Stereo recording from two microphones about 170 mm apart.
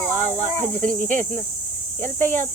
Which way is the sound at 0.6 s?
50° right (ahead or behind).